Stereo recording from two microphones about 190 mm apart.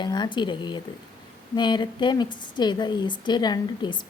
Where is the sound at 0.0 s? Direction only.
25° left (ahead or behind).